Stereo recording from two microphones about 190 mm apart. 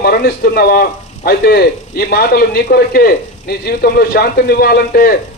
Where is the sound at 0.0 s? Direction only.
55° left (ahead or behind).